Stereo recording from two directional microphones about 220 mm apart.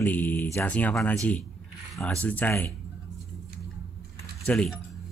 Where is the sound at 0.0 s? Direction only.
10° left (ahead or behind).